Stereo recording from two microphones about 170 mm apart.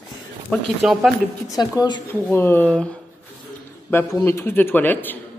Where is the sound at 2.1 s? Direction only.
10° left (ahead or behind).